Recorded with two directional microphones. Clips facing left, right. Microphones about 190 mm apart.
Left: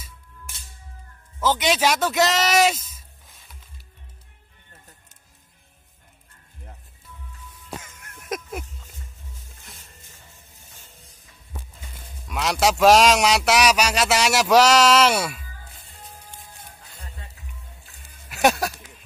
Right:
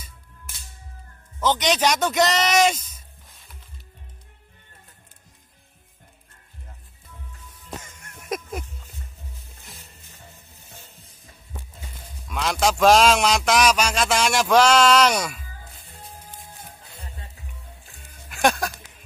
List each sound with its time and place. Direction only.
1.4 s a man's voice: 5° left (ahead or behind)
8.0 s music: centre (ahead or behind)
12.3 s a sound: 5° left (ahead or behind)
16.0 s music: 30° right (ahead or behind)
18.3 s speech: 5° left (ahead or behind)